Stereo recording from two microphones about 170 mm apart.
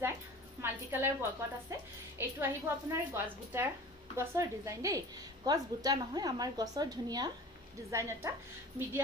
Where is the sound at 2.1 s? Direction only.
15° right (ahead or behind).